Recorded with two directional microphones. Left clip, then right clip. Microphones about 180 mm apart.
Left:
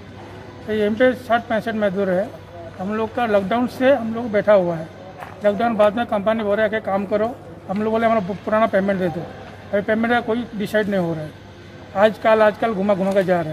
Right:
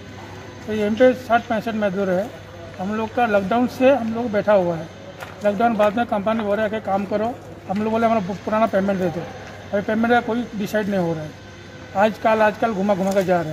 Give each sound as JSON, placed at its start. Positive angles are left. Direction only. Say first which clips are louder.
{"t": 0.7, "sound": "speech", "louder": "right 1 dB", "side_deg": 10}